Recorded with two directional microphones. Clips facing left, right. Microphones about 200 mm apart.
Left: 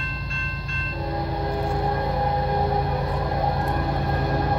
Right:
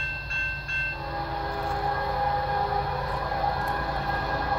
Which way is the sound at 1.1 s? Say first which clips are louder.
Left 5 dB; 20° left (ahead or behind).